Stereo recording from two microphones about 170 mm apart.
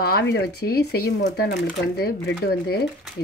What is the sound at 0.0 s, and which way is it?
Speech, 75° left (ahead or behind).